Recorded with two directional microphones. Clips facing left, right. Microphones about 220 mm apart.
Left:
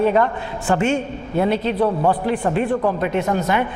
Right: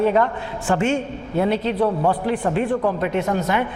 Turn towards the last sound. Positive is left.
turn(degrees=15)  # may be behind; listen again after turning